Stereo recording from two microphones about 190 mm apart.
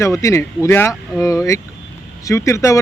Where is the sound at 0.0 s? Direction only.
15° left (ahead or behind).